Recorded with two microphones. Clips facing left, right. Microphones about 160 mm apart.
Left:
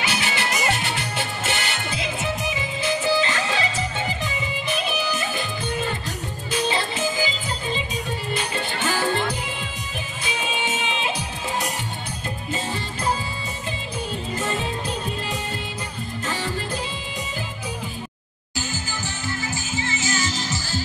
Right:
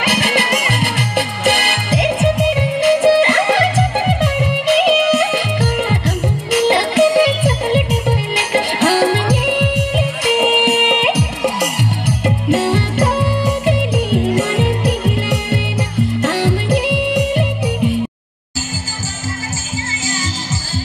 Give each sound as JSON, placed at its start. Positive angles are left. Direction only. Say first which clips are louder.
{"t": 0.0, "sound": "music", "louder": "right 8 dB", "side_deg": -65}